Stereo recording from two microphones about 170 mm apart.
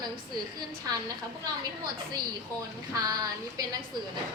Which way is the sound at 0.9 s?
20° right (ahead or behind).